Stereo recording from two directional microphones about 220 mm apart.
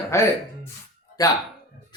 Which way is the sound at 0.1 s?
15° left (ahead or behind).